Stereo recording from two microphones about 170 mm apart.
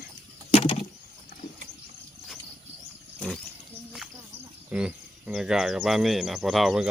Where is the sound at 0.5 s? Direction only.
30° left (ahead or behind).